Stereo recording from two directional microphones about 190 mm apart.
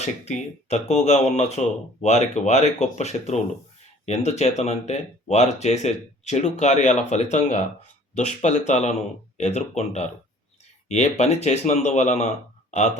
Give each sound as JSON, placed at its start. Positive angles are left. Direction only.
{"t": 0.0, "sound": "speech", "side_deg": 35}